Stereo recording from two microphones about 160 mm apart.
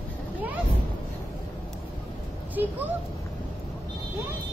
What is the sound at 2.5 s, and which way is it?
Speech, 10° right (ahead or behind).